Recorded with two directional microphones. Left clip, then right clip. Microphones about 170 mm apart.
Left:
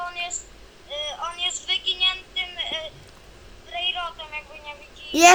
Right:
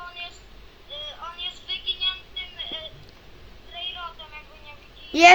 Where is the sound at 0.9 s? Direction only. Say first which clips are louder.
Left 6 dB; 90° left.